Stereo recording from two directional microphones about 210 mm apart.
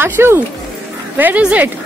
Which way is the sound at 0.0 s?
10° right (ahead or behind).